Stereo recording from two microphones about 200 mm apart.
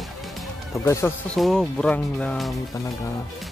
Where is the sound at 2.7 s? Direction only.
15° left (ahead or behind).